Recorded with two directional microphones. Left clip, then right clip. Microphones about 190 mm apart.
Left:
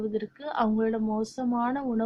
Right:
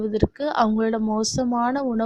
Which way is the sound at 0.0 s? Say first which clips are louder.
Right 8 dB; 40° right (ahead or behind).